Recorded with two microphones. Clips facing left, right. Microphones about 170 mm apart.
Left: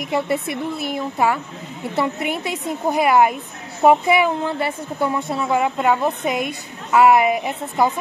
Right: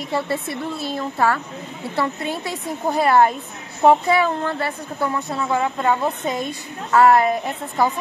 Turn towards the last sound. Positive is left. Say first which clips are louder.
# left 1 dB
turn(degrees=10)  # may be behind; listen again after turning